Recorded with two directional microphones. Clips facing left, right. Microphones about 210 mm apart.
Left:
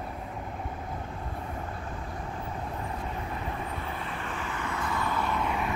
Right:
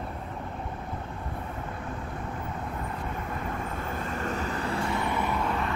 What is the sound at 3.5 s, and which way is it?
Vehicle, 45° right (ahead or behind).